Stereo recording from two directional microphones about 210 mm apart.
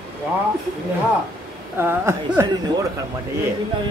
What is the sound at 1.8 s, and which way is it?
Speech, 10° right (ahead or behind).